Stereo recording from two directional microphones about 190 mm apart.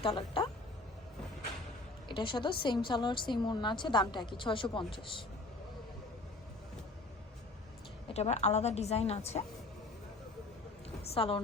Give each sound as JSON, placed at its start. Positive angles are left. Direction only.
{"t": 0.0, "sound": "a woman's voice", "side_deg": 25}
{"t": 2.0, "sound": "a woman's voice", "side_deg": 25}
{"t": 8.0, "sound": "a woman's voice", "side_deg": 35}
{"t": 11.0, "sound": "a woman's voice", "side_deg": 30}